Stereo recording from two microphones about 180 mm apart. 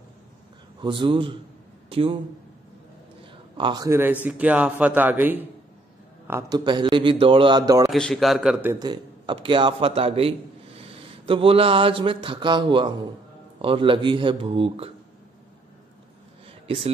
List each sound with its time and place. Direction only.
0.7 s a man's voice: 25° right (ahead or behind)
3.5 s a man's voice: 25° right (ahead or behind)
6.6 s a man's voice: 25° right (ahead or behind)
7.9 s a man's voice: centre (ahead or behind)
8.7 s a man's voice: 25° right (ahead or behind)
16.6 s speech: 30° right (ahead or behind)